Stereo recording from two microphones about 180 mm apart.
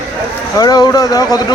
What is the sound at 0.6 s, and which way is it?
Speech, 20° left (ahead or behind).